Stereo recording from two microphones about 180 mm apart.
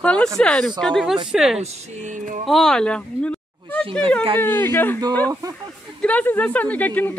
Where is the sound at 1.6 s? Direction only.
45° right (ahead or behind).